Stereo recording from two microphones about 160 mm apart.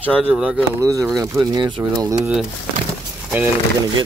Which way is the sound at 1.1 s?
25° right (ahead or behind).